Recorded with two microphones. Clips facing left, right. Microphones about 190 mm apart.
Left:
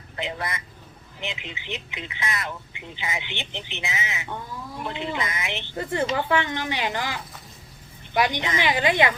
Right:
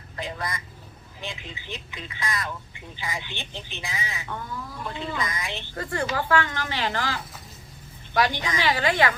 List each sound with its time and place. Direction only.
0.2 s speech: 20° left (ahead or behind)